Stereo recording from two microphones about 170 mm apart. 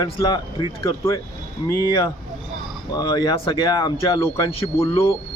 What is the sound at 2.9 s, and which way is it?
Speech, 25° left (ahead or behind).